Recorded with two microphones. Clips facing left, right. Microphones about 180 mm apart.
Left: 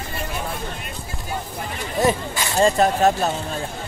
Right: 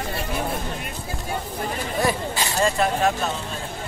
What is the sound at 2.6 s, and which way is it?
Speech, 35° left (ahead or behind).